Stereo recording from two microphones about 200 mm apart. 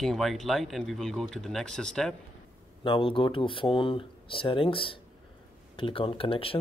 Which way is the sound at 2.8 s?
25° left (ahead or behind).